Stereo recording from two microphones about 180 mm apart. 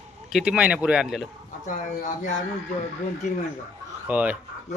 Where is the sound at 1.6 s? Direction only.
45° left (ahead or behind).